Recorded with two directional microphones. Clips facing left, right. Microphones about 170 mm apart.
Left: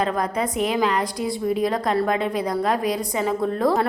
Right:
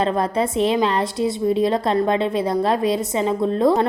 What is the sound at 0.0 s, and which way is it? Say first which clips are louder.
A woman's voice: right 3 dB; 30° right (ahead or behind).